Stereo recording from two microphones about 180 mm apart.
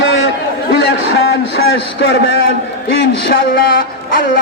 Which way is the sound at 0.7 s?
65° left (ahead or behind).